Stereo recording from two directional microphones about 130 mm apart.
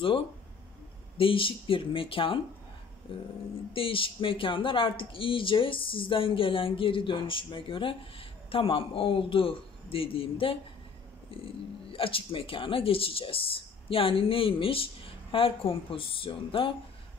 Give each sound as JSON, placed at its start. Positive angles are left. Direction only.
{"t": 1.1, "sound": "speech", "side_deg": 45}
{"t": 3.7, "sound": "speech", "side_deg": 45}